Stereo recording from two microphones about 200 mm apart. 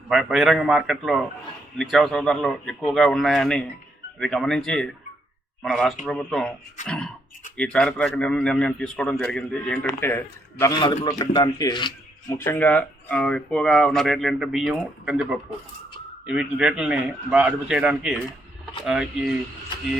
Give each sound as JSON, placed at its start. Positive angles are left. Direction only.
{"t": 0.1, "sound": "a man's voice", "side_deg": 0}
{"t": 12.5, "sound": "a man's voice", "side_deg": 10}